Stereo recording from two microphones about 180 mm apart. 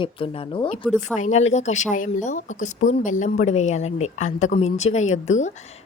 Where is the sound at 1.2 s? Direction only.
40° left (ahead or behind).